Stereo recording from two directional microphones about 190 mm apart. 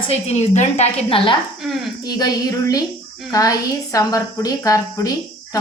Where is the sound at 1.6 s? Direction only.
Centre (ahead or behind).